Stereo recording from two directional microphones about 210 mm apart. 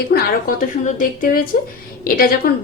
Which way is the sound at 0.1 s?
45° left (ahead or behind).